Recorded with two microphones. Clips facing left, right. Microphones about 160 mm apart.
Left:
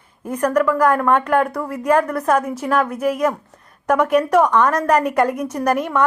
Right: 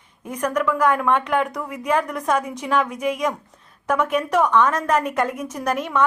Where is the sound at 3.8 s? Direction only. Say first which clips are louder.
Left 5 dB; 10° left (ahead or behind).